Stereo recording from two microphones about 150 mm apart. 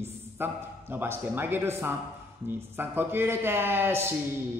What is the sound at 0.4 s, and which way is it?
A man's voice, 15° right (ahead or behind).